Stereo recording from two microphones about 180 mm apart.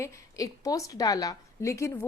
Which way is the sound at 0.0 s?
20° left (ahead or behind).